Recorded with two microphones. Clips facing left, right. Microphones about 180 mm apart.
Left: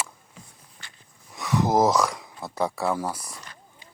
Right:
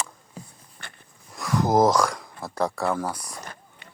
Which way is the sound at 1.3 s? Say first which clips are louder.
Right 1 dB; centre (ahead or behind).